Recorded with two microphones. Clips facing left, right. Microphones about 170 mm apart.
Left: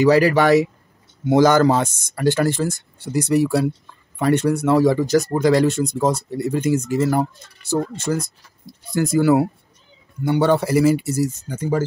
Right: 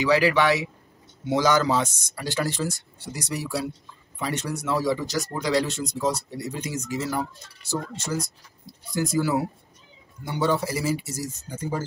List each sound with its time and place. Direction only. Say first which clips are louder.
0.0 s speech: left 6 dB; 45° left (ahead or behind); by 11.8 s 80° left